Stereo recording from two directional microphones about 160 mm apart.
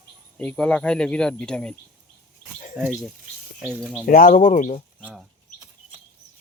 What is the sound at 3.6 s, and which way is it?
Speech, 5° left (ahead or behind).